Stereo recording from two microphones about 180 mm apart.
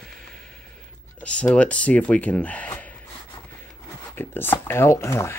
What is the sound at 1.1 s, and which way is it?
Speech, 5° left (ahead or behind).